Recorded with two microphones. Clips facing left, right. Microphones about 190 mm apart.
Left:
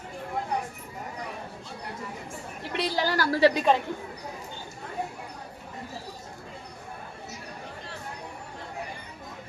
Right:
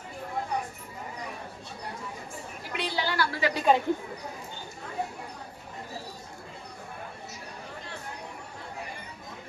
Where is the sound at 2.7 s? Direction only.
40° left (ahead or behind).